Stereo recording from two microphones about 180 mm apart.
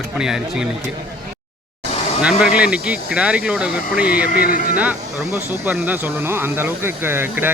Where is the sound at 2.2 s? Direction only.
5° right (ahead or behind).